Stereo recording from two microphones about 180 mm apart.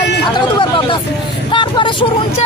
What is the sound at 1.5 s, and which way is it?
Speech, 25° left (ahead or behind).